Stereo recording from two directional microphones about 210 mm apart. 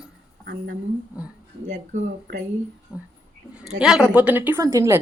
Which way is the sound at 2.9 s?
5° right (ahead or behind).